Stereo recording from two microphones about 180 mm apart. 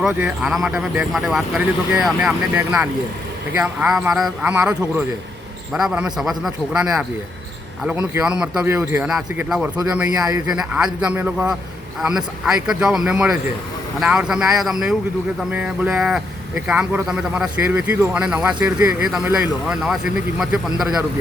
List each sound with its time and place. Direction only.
0.0 s a man's voice: 5° right (ahead or behind)
7.9 s a man's voice: 5° right (ahead or behind)
10.2 s a man's voice: 20° right (ahead or behind)
10.5 s a man's voice: 5° right (ahead or behind)